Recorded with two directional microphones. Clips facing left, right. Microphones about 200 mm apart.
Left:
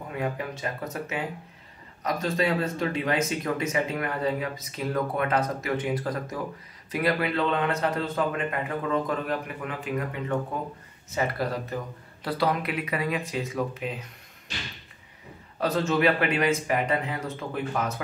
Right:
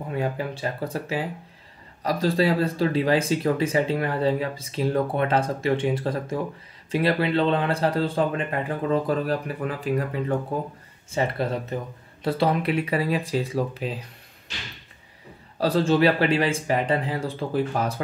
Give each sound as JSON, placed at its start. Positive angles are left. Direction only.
{"t": 0.1, "sound": "speech", "side_deg": -30}
{"t": 15.5, "sound": "speech", "side_deg": -30}